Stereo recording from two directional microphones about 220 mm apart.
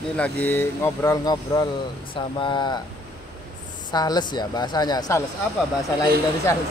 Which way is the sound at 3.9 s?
20° left (ahead or behind).